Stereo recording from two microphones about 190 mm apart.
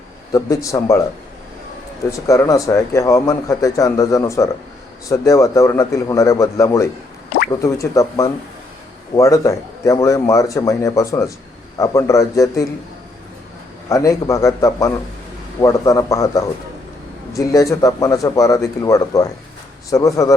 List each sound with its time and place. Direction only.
0.3 s speech: 15° left (ahead or behind)
2.2 s speech: 15° left (ahead or behind)
13.9 s speech: 15° left (ahead or behind)